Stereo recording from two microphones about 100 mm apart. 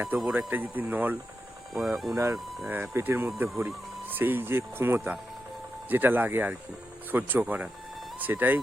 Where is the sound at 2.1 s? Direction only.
35° right (ahead or behind).